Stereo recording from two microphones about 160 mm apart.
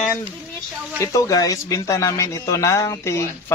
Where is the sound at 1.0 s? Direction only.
20° left (ahead or behind).